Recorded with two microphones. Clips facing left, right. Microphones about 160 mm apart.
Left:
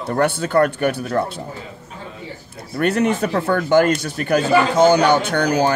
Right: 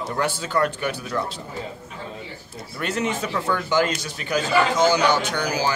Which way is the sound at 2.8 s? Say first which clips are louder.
Left 8 dB; 60° left (ahead or behind).